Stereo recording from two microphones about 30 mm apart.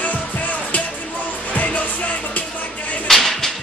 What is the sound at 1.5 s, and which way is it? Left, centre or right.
Music, left.